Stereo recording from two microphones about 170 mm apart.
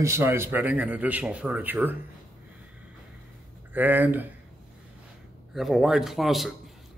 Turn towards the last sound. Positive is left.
turn(degrees=0)  # may be behind; listen again after turning